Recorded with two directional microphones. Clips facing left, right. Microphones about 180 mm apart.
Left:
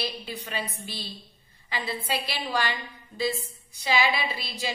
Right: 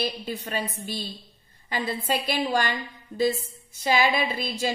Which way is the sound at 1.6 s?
45° right (ahead or behind).